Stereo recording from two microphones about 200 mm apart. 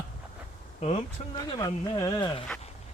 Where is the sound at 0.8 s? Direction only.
30° left (ahead or behind).